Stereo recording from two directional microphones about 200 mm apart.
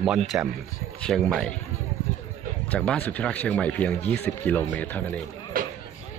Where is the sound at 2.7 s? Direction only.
5° left (ahead or behind).